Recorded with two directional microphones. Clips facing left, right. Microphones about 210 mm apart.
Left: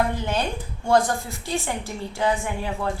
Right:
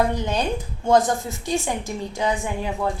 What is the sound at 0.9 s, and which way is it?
A woman's voice, 20° right (ahead or behind).